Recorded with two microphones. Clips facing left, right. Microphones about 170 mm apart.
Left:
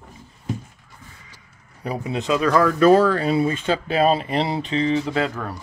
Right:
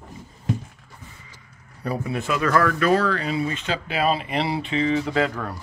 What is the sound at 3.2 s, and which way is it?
Speech, 40° left (ahead or behind).